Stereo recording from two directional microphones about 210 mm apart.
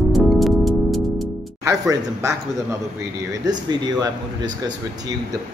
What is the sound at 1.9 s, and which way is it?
Speech, 15° right (ahead or behind).